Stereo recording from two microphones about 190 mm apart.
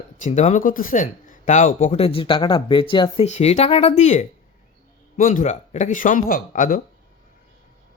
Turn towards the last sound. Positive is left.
turn(degrees=45)  # may be behind; listen again after turning